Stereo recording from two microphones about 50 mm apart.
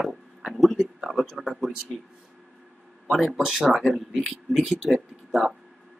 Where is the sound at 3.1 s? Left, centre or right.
Centre.